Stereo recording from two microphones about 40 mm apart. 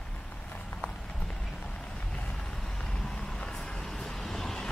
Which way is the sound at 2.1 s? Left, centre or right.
Left.